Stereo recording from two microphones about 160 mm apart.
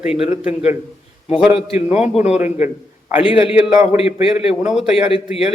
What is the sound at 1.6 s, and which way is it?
A man's voice, 40° left (ahead or behind).